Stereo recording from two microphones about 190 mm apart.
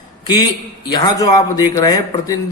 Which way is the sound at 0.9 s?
20° left (ahead or behind).